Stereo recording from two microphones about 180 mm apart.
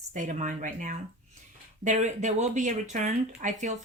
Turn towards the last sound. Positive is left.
turn(degrees=-40)  # may be behind; listen again after turning